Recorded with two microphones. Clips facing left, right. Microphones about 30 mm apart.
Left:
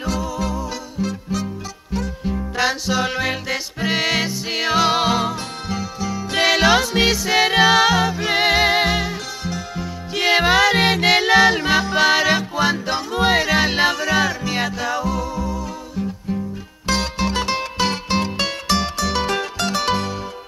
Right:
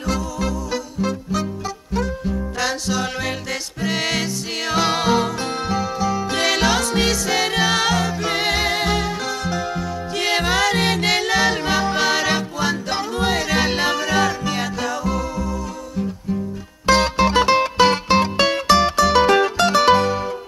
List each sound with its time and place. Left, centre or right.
1.0 s music: right
2.2 s music: centre
5.7 s music: centre
6.3 s music: centre
16.8 s music: right